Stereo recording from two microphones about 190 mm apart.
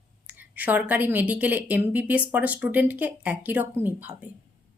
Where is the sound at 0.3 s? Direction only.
10° right (ahead or behind).